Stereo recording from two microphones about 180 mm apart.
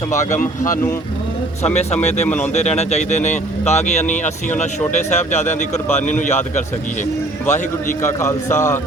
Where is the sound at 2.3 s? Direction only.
5° left (ahead or behind).